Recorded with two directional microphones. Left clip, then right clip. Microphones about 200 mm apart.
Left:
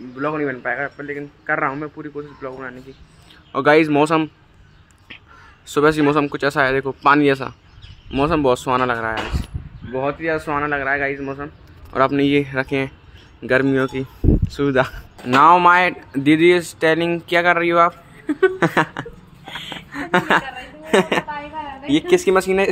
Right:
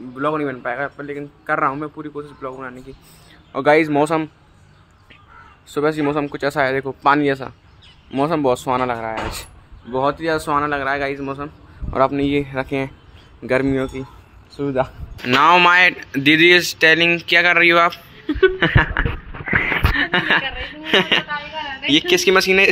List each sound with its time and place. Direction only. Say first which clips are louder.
0.2 s a man's voice: right 1 dB; 5° right (ahead or behind)
3.5 s speech: left 1 dB; 10° left (ahead or behind)
5.7 s speech: left 4 dB; 20° left (ahead or behind)
9.9 s a man's voice: right 2 dB; 15° right (ahead or behind)
12.0 s speech: left 1 dB; 15° left (ahead or behind)
14.5 s speech: left 1 dB; 30° left (ahead or behind)
15.2 s a woman's voice: left 1 dB; 5° left (ahead or behind)